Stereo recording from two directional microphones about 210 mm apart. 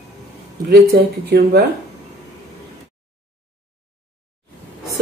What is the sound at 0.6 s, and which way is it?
Speech, 45° right (ahead or behind).